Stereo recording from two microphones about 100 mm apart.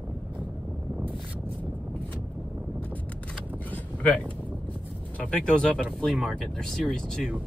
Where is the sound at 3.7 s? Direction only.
15° left (ahead or behind).